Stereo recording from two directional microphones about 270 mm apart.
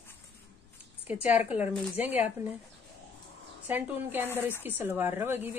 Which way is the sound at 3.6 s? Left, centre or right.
Centre.